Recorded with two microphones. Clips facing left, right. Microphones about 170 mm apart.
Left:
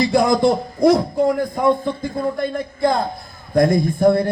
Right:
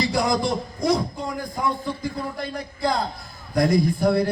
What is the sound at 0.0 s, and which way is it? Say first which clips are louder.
A man's voice: left 7 dB; 50° left (ahead or behind).